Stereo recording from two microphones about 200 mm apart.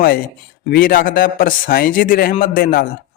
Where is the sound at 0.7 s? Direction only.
45° left (ahead or behind).